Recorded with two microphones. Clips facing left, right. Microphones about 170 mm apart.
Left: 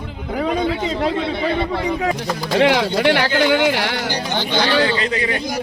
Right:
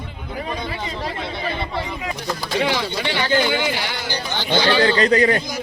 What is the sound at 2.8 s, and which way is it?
Speech, 60° left (ahead or behind).